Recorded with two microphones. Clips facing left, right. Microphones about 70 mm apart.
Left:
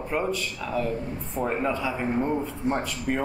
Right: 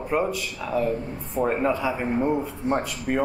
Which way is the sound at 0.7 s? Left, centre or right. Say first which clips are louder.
Right 4 dB; centre.